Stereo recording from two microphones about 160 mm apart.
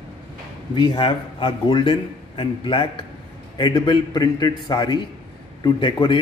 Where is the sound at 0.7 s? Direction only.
30° left (ahead or behind).